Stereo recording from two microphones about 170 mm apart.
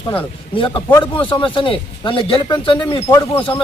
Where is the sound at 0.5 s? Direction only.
30° left (ahead or behind).